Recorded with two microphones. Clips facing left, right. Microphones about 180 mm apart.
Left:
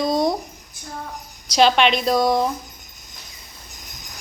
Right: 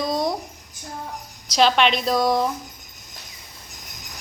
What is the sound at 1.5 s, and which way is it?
Speech, centre (ahead or behind).